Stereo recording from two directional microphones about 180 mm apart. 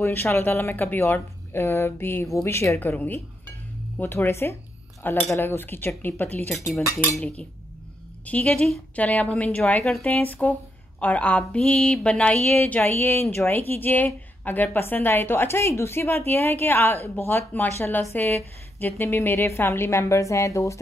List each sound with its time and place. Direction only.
0.0 s a woman's voice: 15° left (ahead or behind)
7.2 s a woman's voice: 5° left (ahead or behind)